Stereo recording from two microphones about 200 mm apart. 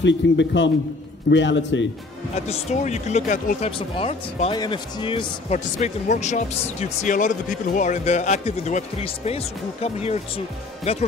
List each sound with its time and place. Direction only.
0.0 s a man's voice: 65° left (ahead or behind)
2.3 s speech: 35° left (ahead or behind)